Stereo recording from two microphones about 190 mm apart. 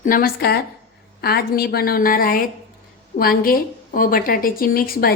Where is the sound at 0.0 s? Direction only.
50° left (ahead or behind).